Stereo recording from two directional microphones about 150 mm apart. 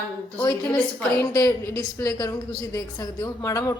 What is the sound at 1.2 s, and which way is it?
A woman's voice, 20° left (ahead or behind).